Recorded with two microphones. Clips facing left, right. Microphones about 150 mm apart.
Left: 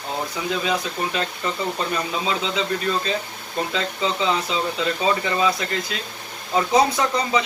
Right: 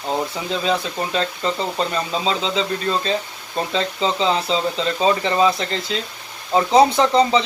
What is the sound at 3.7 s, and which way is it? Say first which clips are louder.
A man's voice: right 5 dB; 30° right (ahead or behind).